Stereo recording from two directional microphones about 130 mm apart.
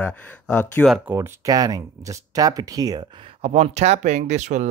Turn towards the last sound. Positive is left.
turn(degrees=-65)  # may be behind; listen again after turning